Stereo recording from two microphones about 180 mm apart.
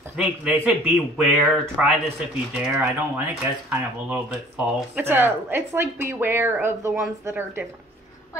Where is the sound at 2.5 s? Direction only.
10° right (ahead or behind).